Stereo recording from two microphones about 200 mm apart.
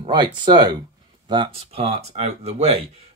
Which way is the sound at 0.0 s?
20° right (ahead or behind).